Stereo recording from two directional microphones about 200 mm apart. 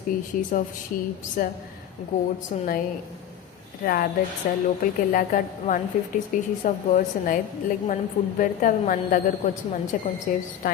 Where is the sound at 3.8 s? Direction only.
45° left (ahead or behind).